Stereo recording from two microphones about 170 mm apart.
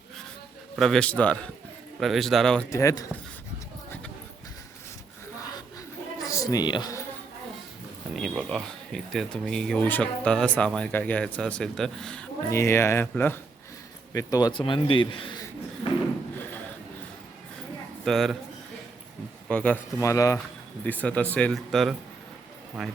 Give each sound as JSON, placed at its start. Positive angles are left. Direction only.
{"t": 0.8, "sound": "speech", "side_deg": 5}
{"t": 2.6, "sound": "speech", "side_deg": 20}
{"t": 6.1, "sound": "a sound", "side_deg": 20}
{"t": 8.1, "sound": "speech", "side_deg": 0}
{"t": 12.5, "sound": "a man's voice", "side_deg": 15}
{"t": 18.0, "sound": "a man's voice", "side_deg": 0}
{"t": 19.5, "sound": "speech", "side_deg": 5}
{"t": 20.0, "sound": "speech", "side_deg": 20}